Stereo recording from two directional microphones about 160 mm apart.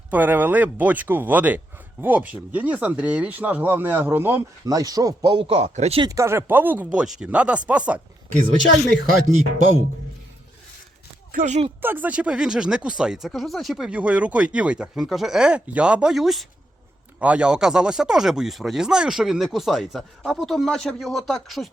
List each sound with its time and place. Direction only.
0.1 s speech: 10° right (ahead or behind); by 6.0 s 45° right (ahead or behind)
6.0 s speech: 20° right (ahead or behind)
8.9 s speech: 50° right (ahead or behind)
11.3 s speech: 50° right (ahead or behind)
11.8 s speech: 10° right (ahead or behind)